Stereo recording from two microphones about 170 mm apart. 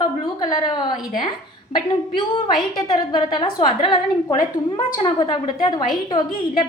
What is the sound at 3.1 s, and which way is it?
A woman's voice, 30° left (ahead or behind).